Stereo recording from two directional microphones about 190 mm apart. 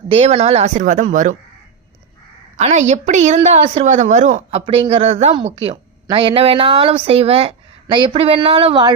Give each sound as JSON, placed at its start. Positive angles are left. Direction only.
{"t": 0.1, "sound": "speech", "side_deg": -30}
{"t": 2.6, "sound": "speech", "side_deg": -35}